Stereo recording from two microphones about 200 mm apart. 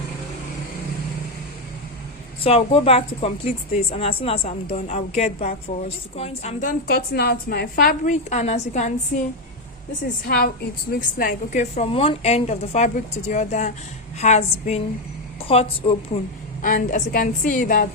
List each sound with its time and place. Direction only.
2.4 s a woman's voice: 30° left (ahead or behind)
9.1 s a woman's voice: 50° left (ahead or behind); by 16.0 s 30° left (ahead or behind)
16.6 s a woman's voice: 40° left (ahead or behind)